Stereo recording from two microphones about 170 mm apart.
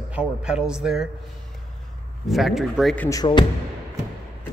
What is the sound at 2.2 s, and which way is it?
Speech, centre (ahead or behind).